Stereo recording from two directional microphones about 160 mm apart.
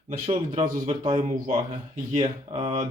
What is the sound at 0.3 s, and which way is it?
Speech, 30° right (ahead or behind).